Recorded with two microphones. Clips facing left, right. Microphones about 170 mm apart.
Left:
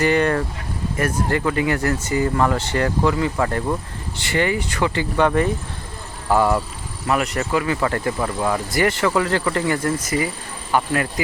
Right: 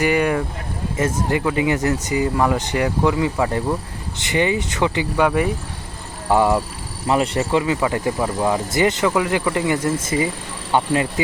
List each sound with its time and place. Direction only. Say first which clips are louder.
0.0 s speech: even; 10° right (ahead or behind)
5.1 s speech: left 2 dB; 5° right (ahead or behind)
7.1 s speech: right 2 dB; 25° right (ahead or behind)